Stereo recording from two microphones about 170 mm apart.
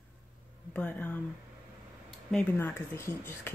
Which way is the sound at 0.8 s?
10° left (ahead or behind).